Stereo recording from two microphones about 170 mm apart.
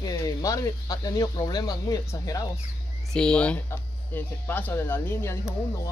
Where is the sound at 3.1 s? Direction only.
5° left (ahead or behind).